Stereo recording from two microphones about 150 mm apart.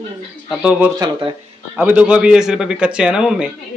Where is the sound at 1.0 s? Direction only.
35° right (ahead or behind).